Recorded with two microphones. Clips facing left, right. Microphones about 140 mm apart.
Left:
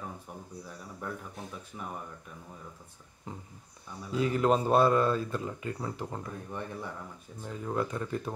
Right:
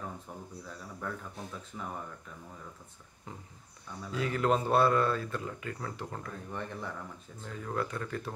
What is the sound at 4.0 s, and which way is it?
Speech, 20° left (ahead or behind).